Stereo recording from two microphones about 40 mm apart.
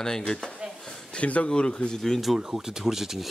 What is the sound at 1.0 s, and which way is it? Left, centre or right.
Speech, left.